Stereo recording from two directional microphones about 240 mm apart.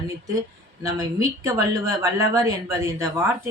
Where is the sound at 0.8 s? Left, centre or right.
Centre.